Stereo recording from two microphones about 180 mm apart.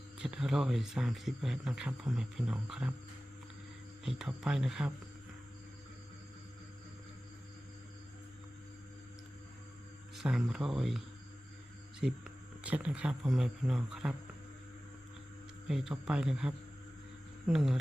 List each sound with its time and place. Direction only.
0.2 s speech: 5° right (ahead or behind)
4.0 s speech: 5° right (ahead or behind)
10.2 s speech: centre (ahead or behind)
15.6 s speech: 5° right (ahead or behind)